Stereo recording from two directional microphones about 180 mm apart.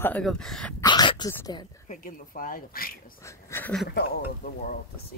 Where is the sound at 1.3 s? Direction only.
15° left (ahead or behind).